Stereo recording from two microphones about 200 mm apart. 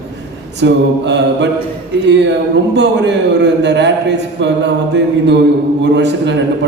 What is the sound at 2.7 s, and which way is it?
A man's voice, 60° right (ahead or behind).